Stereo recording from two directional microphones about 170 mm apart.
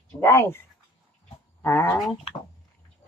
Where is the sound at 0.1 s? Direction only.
15° left (ahead or behind).